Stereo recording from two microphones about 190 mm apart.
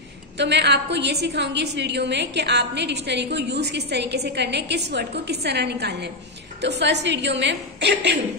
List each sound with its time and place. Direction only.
0.4 s a woman's voice: 65° right (ahead or behind)